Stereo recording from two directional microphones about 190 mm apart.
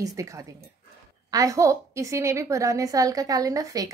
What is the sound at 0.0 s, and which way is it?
A woman's voice, 15° right (ahead or behind).